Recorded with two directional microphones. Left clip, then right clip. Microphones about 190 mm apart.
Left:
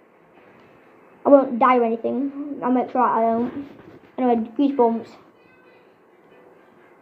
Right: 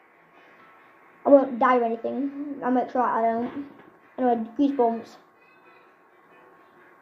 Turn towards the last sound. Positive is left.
turn(degrees=15)  # may be behind; listen again after turning